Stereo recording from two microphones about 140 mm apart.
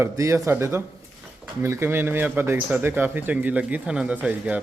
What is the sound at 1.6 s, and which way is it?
Speech, 20° right (ahead or behind).